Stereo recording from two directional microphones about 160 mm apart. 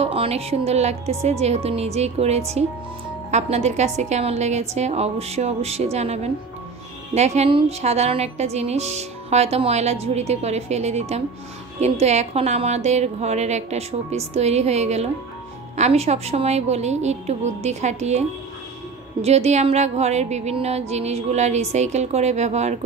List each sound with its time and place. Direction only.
0.0 s a woman's voice: 40° right (ahead or behind)
19.2 s a woman's voice: 45° right (ahead or behind)